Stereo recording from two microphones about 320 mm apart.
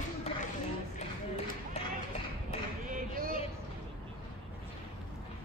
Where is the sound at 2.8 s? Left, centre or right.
Right.